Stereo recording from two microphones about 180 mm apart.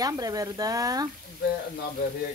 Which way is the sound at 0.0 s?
20° right (ahead or behind).